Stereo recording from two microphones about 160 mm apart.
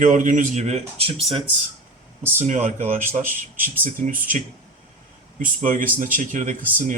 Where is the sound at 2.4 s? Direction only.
45° right (ahead or behind).